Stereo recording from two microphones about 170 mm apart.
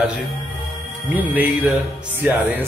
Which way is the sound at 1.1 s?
10° right (ahead or behind).